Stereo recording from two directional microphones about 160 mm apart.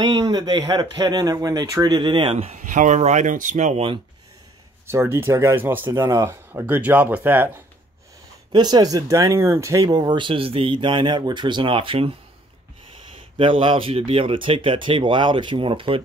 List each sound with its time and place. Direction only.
0.0 s speech: 25° right (ahead or behind)
2.3 s speech: 50° right (ahead or behind)
4.8 s speech: 15° right (ahead or behind)
8.5 s speech: 25° right (ahead or behind)
13.4 s speech: 35° right (ahead or behind)